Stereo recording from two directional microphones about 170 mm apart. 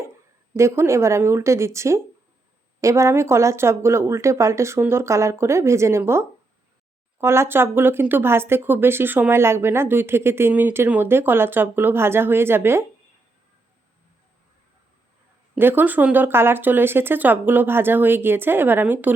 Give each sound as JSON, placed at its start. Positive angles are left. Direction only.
{"t": 0.5, "sound": "speech", "side_deg": -15}
{"t": 15.5, "sound": "speech", "side_deg": -10}